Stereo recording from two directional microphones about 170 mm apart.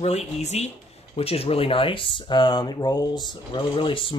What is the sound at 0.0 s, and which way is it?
Speech, 40° left (ahead or behind).